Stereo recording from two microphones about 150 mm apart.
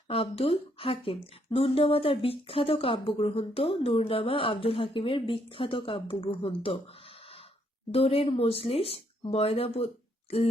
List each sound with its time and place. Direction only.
0.1 s speech: 40° left (ahead or behind)
7.9 s speech: 40° left (ahead or behind)